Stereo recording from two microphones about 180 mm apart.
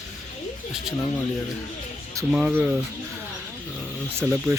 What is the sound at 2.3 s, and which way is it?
Speech, 5° right (ahead or behind).